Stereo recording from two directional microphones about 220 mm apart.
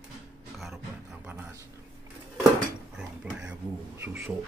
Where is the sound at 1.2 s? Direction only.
10° right (ahead or behind).